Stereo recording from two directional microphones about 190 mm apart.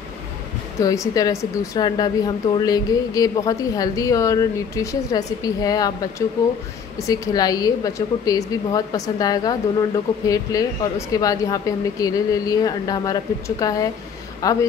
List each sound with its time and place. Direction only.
0.7 s a woman's voice: 15° left (ahead or behind)